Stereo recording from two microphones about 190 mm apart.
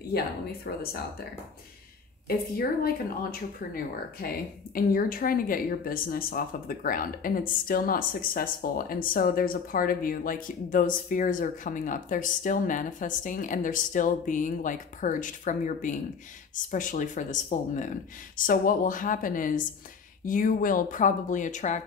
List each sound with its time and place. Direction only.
0.7 s speech: 55° left (ahead or behind)
2.2 s a woman's voice: 55° left (ahead or behind)